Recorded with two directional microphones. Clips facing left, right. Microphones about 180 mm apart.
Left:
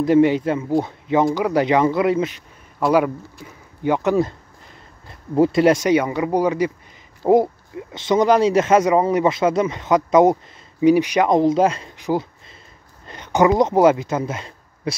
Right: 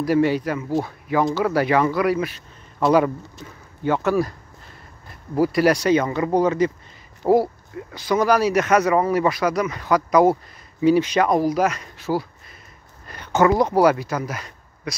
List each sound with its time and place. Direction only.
0.0 s speech: 20° left (ahead or behind)
3.4 s a sound: 15° left (ahead or behind)
5.3 s speech: 25° left (ahead or behind)